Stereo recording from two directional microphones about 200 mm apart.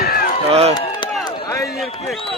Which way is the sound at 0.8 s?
20° left (ahead or behind).